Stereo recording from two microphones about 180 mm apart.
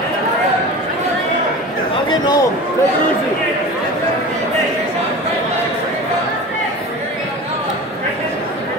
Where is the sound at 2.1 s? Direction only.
20° left (ahead or behind).